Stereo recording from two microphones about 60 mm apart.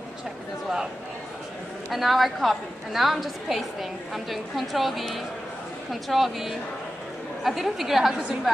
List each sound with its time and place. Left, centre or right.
1.9 s a woman's voice: centre